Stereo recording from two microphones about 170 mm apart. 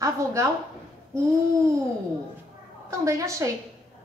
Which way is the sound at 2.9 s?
20° right (ahead or behind).